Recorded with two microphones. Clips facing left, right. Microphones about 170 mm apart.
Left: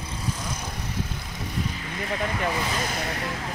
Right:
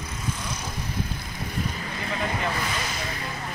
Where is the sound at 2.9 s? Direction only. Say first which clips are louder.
Left 3 dB; 65° left (ahead or behind).